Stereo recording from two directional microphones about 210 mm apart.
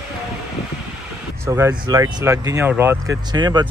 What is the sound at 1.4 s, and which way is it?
Speech, 15° right (ahead or behind).